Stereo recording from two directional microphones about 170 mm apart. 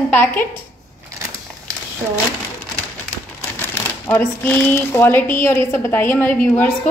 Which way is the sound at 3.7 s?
10° left (ahead or behind).